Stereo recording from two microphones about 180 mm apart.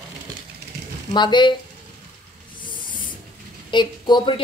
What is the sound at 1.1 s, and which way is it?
Speech, 25° left (ahead or behind).